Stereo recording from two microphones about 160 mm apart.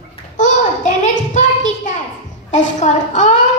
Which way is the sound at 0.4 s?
50° left (ahead or behind).